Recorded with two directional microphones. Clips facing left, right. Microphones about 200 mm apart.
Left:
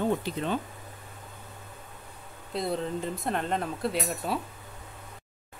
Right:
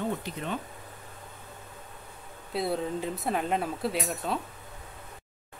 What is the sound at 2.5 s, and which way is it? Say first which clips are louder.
Speech: right 1 dB; 5° right (ahead or behind).